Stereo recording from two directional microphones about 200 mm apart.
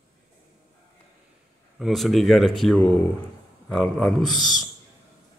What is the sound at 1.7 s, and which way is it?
A man's voice, centre (ahead or behind).